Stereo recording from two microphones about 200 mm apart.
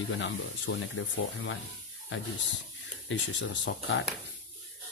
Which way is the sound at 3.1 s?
65° left (ahead or behind).